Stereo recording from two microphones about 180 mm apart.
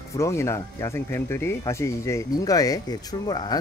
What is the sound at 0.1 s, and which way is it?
Speech, 15° left (ahead or behind).